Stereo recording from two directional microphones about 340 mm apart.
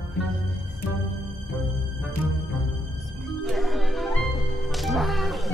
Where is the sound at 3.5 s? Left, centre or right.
Centre.